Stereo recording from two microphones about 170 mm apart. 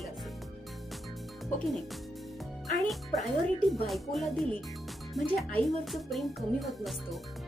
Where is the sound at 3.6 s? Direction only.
Centre (ahead or behind).